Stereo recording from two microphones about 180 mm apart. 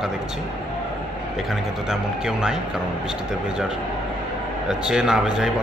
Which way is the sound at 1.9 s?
5° right (ahead or behind).